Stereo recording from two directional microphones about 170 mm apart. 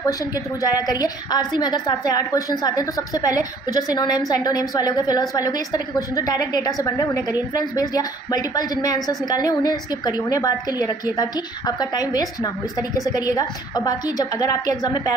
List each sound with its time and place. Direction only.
0.0 s a woman's voice: 20° left (ahead or behind)